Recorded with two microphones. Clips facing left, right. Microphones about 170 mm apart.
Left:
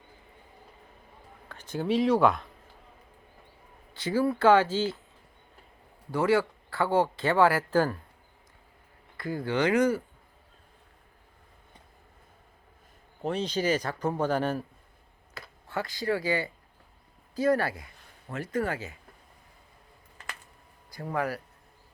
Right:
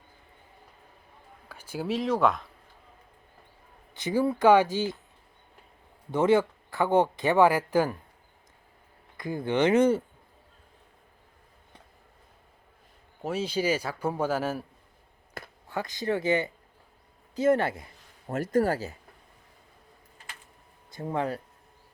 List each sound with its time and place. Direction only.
1.5 s speech: 10° right (ahead or behind)
3.9 s speech: 20° right (ahead or behind)
6.1 s speech: 20° right (ahead or behind)
9.1 s speech: 20° right (ahead or behind)
13.2 s speech: 5° right (ahead or behind)
15.4 s a sound: 55° right (ahead or behind)
15.7 s speech: 20° right (ahead or behind)
18.3 s speech: 40° right (ahead or behind)
20.9 s speech: 25° right (ahead or behind)